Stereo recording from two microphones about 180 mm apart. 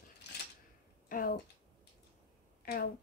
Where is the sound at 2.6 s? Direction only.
50° left (ahead or behind).